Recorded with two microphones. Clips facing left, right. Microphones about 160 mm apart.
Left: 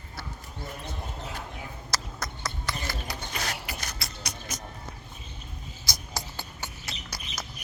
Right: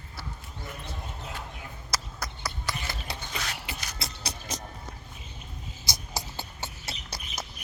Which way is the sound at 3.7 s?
45° left (ahead or behind).